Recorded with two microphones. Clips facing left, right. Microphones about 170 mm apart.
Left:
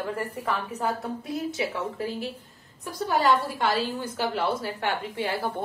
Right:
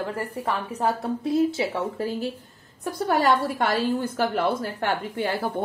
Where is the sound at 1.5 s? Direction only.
30° right (ahead or behind).